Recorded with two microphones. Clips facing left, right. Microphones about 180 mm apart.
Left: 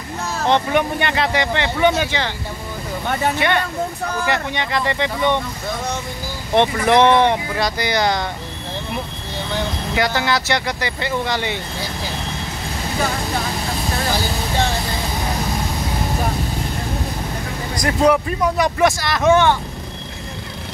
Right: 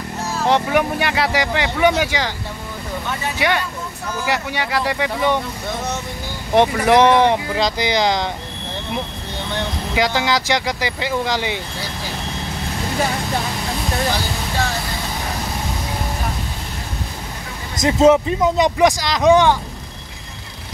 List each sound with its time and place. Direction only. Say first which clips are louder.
0.5 s speech: even; 10° right (ahead or behind)
3.3 s speech: left 1 dB; 10° right (ahead or behind)
6.5 s speech: right 1 dB; 10° right (ahead or behind)
9.9 s speech: right 1 dB; 15° right (ahead or behind)
17.7 s speech: right 3 dB; 25° right (ahead or behind)